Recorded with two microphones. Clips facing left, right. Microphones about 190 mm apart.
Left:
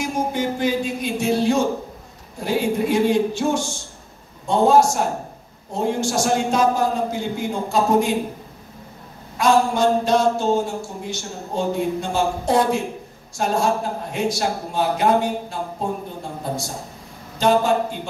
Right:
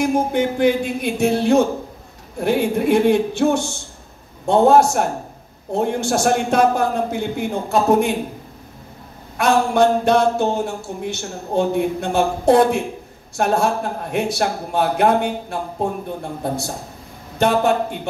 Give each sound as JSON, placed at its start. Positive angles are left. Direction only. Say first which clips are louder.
{"t": 0.0, "sound": "a man's voice", "louder": "right 5 dB", "side_deg": -60}
{"t": 9.4, "sound": "a man's voice", "louder": "right 2 dB", "side_deg": -60}